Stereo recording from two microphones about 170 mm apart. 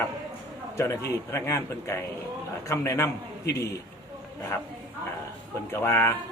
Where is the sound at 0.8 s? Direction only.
15° left (ahead or behind).